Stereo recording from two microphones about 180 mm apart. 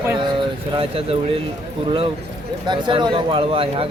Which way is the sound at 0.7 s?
30° right (ahead or behind).